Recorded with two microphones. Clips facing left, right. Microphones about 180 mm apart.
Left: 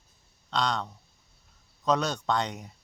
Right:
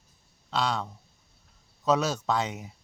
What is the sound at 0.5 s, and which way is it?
Speech, 5° right (ahead or behind).